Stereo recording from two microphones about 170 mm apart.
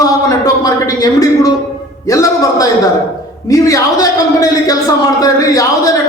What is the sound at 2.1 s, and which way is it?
A woman's voice, 20° left (ahead or behind).